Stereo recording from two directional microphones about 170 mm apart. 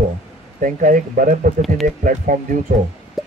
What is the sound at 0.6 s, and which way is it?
Speech, 50° right (ahead or behind).